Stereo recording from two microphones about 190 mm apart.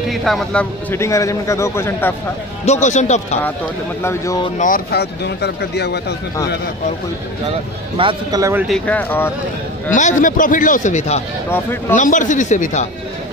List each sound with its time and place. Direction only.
0.1 s a man's voice: centre (ahead or behind)
2.6 s a man's voice: 35° left (ahead or behind)
4.0 s a man's voice: 15° left (ahead or behind)
4.6 s speech: 45° left (ahead or behind)
8.0 s speech: 25° right (ahead or behind)
8.6 s a man's voice: 5° left (ahead or behind)
9.8 s a man's voice: 40° left (ahead or behind)